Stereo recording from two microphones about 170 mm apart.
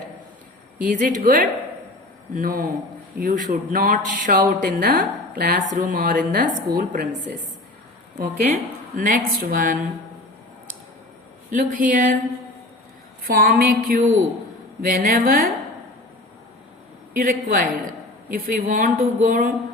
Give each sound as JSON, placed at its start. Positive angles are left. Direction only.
{"t": 0.9, "sound": "a woman's voice", "side_deg": -50}
{"t": 8.2, "sound": "a woman's voice", "side_deg": -55}
{"t": 11.5, "sound": "a woman's voice", "side_deg": -55}
{"t": 13.2, "sound": "speech", "side_deg": -55}
{"t": 17.2, "sound": "speech", "side_deg": -55}